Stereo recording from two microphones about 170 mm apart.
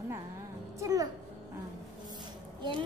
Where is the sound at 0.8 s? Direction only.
20° right (ahead or behind).